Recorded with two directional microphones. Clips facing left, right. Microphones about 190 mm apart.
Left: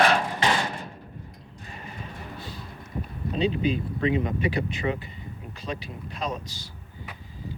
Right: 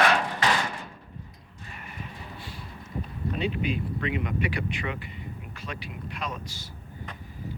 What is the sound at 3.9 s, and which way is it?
Speech, 30° left (ahead or behind).